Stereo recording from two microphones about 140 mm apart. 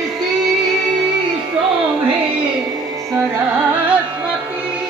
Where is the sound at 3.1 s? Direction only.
15° right (ahead or behind).